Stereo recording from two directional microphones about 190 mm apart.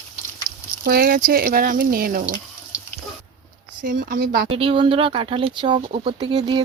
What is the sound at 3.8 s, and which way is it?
Speech, 45° right (ahead or behind).